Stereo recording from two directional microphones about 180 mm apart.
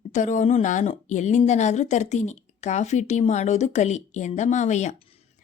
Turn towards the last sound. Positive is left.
turn(degrees=40)  # may be behind; listen again after turning